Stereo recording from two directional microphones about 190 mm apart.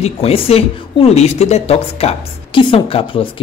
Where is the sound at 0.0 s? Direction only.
30° left (ahead or behind).